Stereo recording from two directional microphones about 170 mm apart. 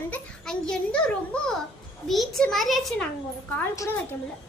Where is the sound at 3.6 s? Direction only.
20° left (ahead or behind).